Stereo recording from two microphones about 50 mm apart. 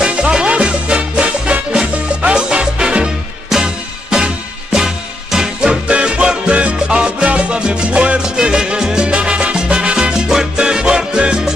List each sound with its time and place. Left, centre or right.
0.0 s music: centre
9.1 s salsa music: right